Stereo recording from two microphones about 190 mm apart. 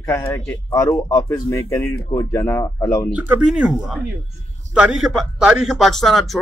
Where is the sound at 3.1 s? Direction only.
5° right (ahead or behind).